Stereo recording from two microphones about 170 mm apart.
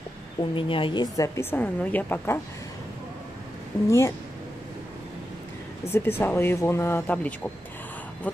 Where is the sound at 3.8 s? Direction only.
15° left (ahead or behind).